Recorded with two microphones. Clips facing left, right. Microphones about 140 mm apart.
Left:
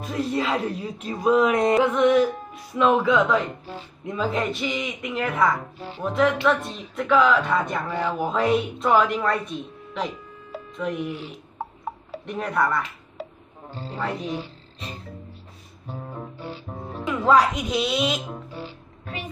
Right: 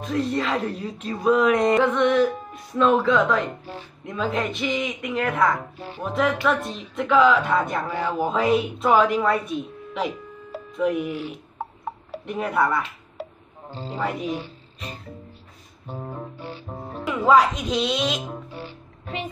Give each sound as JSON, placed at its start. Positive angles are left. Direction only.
{"t": 0.0, "sound": "music", "side_deg": 10}
{"t": 4.0, "sound": "a woman's voice", "side_deg": 0}
{"t": 13.7, "sound": "music", "side_deg": -20}
{"t": 13.9, "sound": "speech", "side_deg": -5}
{"t": 16.9, "sound": "music", "side_deg": -5}
{"t": 17.6, "sound": "music", "side_deg": 10}